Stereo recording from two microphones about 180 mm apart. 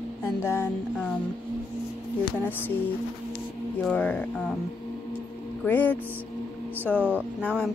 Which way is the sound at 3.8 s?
10° left (ahead or behind).